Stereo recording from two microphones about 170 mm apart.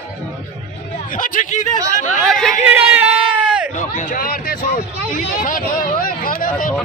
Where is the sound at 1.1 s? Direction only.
50° left (ahead or behind).